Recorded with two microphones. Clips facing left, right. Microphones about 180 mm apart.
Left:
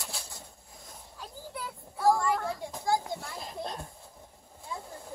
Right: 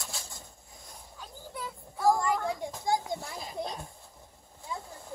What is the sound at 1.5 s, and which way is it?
Child singing, 5° left (ahead or behind).